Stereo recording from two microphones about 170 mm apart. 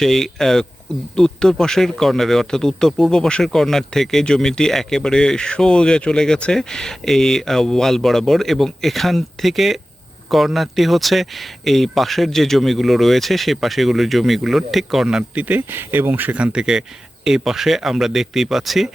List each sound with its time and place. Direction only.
0.0 s speech: centre (ahead or behind)